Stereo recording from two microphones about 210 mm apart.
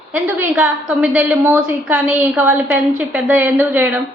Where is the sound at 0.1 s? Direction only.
10° right (ahead or behind).